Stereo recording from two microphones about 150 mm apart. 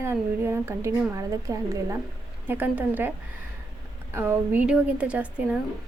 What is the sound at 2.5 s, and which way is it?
Speech, 10° right (ahead or behind).